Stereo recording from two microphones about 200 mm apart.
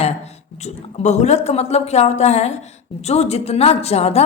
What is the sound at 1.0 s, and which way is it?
A woman's voice, 35° left (ahead or behind).